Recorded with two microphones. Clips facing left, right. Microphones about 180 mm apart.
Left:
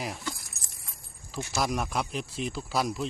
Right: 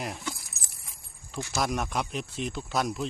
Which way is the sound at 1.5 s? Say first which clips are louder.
Even; centre (ahead or behind).